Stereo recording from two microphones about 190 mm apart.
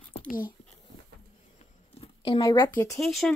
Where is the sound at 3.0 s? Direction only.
Centre (ahead or behind).